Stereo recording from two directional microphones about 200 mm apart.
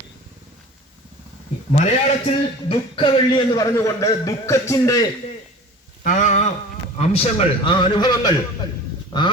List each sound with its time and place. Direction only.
1.7 s a man's voice: 35° left (ahead or behind); by 5.0 s 15° left (ahead or behind)
6.0 s a sound: 40° left (ahead or behind)
7.0 s a man's voice: 30° left (ahead or behind)